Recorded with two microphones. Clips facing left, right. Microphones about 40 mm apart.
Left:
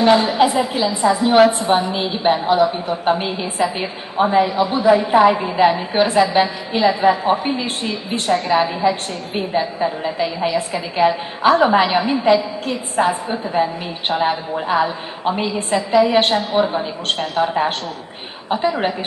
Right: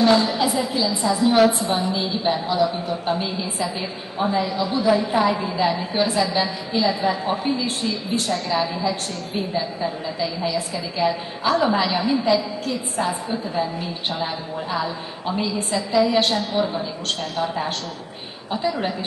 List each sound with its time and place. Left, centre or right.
0.0 s a woman's voice: left